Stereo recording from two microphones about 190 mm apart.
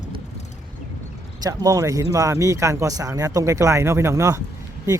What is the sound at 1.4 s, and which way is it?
Speech, 20° right (ahead or behind).